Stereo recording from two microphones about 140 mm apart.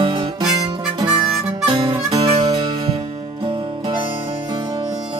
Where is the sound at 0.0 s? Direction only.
35° right (ahead or behind).